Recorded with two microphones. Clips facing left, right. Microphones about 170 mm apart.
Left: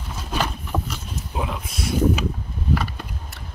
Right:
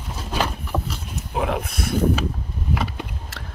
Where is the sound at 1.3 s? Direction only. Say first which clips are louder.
Right 5 dB; 60° right (ahead or behind).